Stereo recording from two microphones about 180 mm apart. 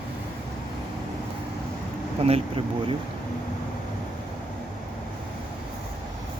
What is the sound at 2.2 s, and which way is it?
Speech, 35° right (ahead or behind).